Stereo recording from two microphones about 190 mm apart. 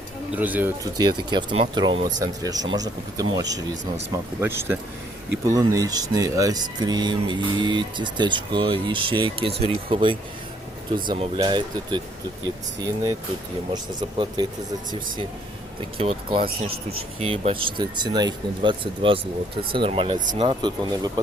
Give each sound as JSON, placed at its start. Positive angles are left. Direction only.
{"t": 0.3, "sound": "speech", "side_deg": -10}
{"t": 0.9, "sound": "speech", "side_deg": -25}
{"t": 14.0, "sound": "speech", "side_deg": -25}
{"t": 16.0, "sound": "speech", "side_deg": -30}